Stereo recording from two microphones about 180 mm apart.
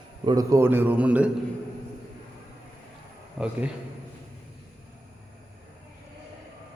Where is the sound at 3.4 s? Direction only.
Centre (ahead or behind).